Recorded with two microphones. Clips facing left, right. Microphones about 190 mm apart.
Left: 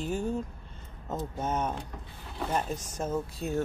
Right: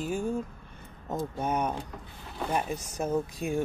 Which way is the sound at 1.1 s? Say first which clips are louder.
Right 2 dB; 15° right (ahead or behind).